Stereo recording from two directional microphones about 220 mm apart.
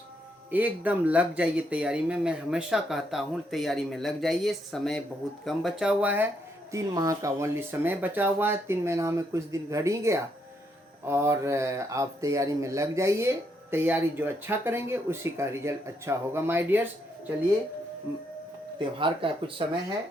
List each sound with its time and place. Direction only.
0.5 s speech: 5° right (ahead or behind)
18.8 s speech: 20° right (ahead or behind)